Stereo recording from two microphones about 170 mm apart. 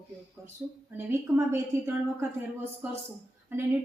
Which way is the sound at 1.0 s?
10° right (ahead or behind).